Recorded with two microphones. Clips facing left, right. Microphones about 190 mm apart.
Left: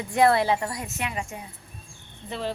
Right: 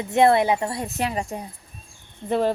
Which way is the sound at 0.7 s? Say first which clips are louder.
Right 6 dB; 35° right (ahead or behind).